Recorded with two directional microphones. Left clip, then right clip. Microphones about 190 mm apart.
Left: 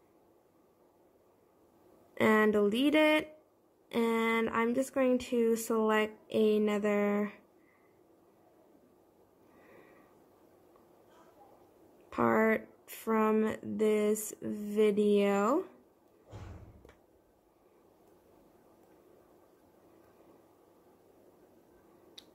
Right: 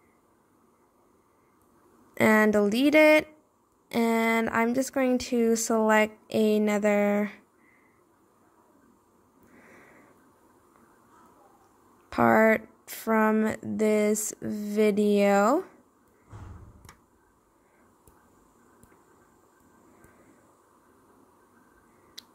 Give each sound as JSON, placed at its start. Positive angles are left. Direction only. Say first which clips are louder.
{"t": 2.1, "sound": "speech", "louder": "right 5 dB", "side_deg": -25}
{"t": 12.1, "sound": "speech", "louder": "right 7 dB", "side_deg": -25}